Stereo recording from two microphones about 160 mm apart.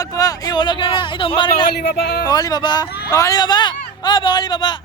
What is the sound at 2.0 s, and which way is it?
Speech, 80° left.